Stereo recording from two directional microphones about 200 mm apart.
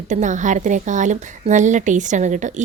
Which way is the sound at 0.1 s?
40° right (ahead or behind).